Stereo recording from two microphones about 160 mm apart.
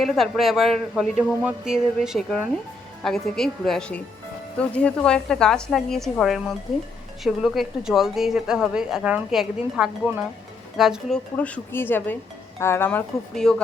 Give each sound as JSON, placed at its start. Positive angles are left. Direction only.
{"t": 0.0, "sound": "speech", "side_deg": 0}
{"t": 11.3, "sound": "speech", "side_deg": 10}